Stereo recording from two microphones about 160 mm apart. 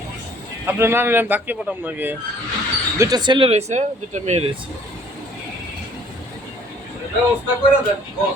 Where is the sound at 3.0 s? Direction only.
25° right (ahead or behind); by 4.4 s 45° right (ahead or behind).